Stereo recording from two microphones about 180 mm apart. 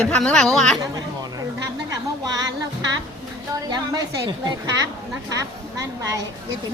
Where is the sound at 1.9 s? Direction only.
20° right (ahead or behind).